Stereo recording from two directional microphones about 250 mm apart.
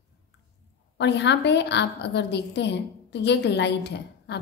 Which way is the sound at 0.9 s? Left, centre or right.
Left.